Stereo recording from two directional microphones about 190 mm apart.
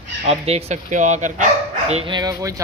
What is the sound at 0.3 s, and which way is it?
Speech, 35° right (ahead or behind).